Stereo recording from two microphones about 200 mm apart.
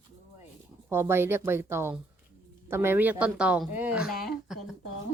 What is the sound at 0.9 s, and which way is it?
Speech, 10° right (ahead or behind).